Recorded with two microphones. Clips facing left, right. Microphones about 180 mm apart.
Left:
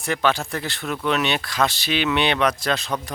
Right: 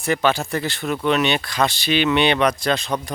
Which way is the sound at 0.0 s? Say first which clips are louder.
Right 2 dB; centre (ahead or behind).